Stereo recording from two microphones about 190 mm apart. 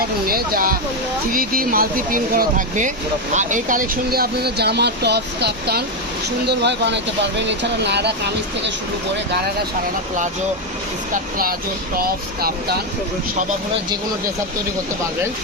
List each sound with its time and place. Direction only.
0.3 s speech: 50° right (ahead or behind)
11.1 s speech: 50° right (ahead or behind)